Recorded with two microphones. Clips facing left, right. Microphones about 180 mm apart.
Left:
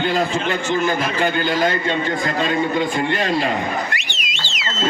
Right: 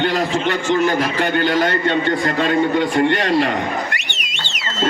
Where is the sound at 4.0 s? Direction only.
65° right (ahead or behind).